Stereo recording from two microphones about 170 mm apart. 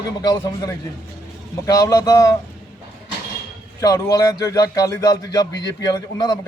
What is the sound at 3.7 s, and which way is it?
A man's voice, 20° left (ahead or behind).